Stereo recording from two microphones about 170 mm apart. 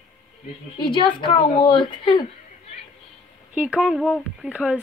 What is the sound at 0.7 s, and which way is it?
A woman's voice, 30° left (ahead or behind).